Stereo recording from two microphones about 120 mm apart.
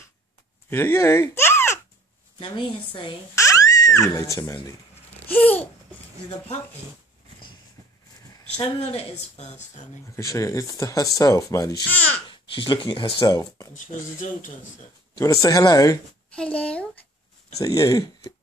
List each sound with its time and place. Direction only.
0.7 s speech: 20° left (ahead or behind)
2.3 s a woman's voice: 40° left (ahead or behind)
3.3 s a sound: 25° left (ahead or behind)
5.3 s speech: 10° left (ahead or behind)
8.9 s a woman's voice: 75° left (ahead or behind)
10.1 s speech: 25° left (ahead or behind)
11.9 s babbling: 15° left (ahead or behind)
12.3 s speech: 45° left (ahead or behind)
13.2 s speech: 30° left (ahead or behind)
13.7 s speech: 90° left
15.1 s speech: 30° left (ahead or behind)
16.3 s speech: 10° left (ahead or behind)
17.6 s speech: 30° left (ahead or behind)